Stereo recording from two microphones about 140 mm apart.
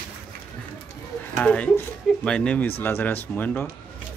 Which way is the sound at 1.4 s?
10° left (ahead or behind).